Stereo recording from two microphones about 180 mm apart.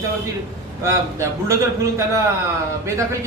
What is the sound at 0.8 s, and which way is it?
A man's voice, 15° right (ahead or behind).